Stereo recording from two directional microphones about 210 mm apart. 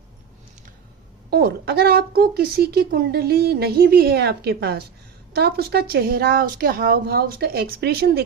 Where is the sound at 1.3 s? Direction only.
50° right (ahead or behind).